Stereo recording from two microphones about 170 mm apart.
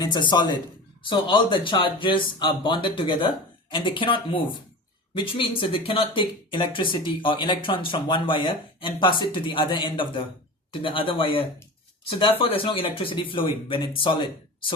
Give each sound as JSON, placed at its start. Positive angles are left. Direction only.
{"t": 0.0, "sound": "speech", "side_deg": 25}